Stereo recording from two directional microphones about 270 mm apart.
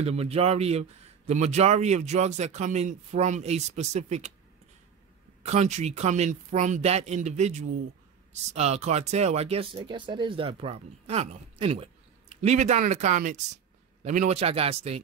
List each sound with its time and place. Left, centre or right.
0.0 s a man's voice: right
5.4 s a man's voice: right